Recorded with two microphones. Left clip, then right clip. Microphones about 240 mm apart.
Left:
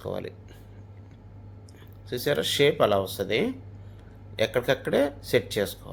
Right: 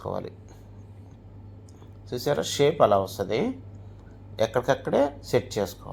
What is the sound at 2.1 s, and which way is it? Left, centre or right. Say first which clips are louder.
Speech: left 1 dB; centre.